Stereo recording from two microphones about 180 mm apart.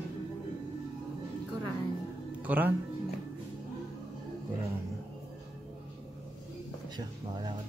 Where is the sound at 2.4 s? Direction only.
10° right (ahead or behind).